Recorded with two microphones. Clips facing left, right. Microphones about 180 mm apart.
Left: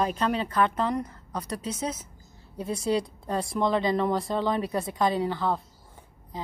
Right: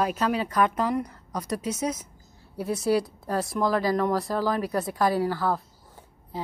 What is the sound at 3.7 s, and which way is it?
Speech, 25° left (ahead or behind).